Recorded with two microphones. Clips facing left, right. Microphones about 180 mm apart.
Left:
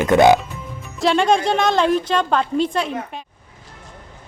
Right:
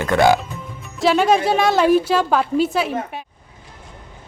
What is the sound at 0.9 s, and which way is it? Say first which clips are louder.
A woman's voice: right 1 dB; 5° right (ahead or behind).